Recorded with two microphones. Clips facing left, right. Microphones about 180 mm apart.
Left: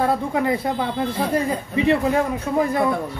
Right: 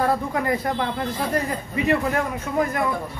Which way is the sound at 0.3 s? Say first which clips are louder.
Left 2 dB; 20° left (ahead or behind).